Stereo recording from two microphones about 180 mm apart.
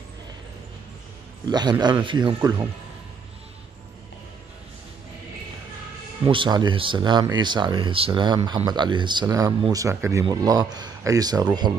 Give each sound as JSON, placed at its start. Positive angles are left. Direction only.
{"t": 1.5, "sound": "speech", "side_deg": -25}
{"t": 6.2, "sound": "speech", "side_deg": -25}